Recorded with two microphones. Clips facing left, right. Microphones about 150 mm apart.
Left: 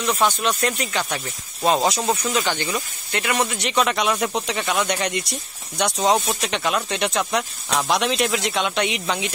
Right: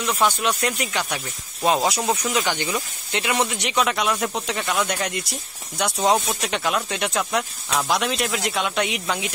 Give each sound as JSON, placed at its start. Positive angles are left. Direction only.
{"t": 0.0, "sound": "speech", "side_deg": -5}
{"t": 3.8, "sound": "speech", "side_deg": 0}